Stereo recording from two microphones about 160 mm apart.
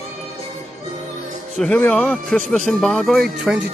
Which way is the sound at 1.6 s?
5° left (ahead or behind).